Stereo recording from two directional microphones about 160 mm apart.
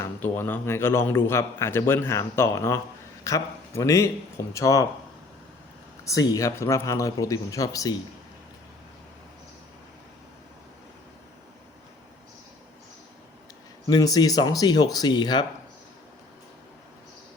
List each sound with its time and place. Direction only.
0.0 s a man's voice: 15° left (ahead or behind)
6.1 s speech: 20° left (ahead or behind)
13.8 s speech: 25° left (ahead or behind)